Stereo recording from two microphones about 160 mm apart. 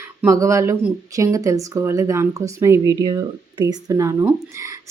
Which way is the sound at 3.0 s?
30° right (ahead or behind).